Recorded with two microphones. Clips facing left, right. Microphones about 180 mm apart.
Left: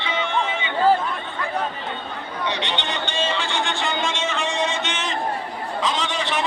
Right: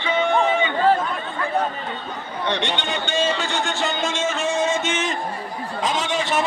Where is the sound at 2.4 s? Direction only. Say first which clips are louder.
Right 3 dB; 50° right (ahead or behind).